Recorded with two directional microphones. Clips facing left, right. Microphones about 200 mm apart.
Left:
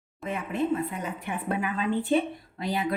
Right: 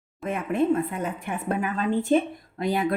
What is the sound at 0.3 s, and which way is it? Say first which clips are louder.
A woman's voice: right 4 dB; 50° right (ahead or behind).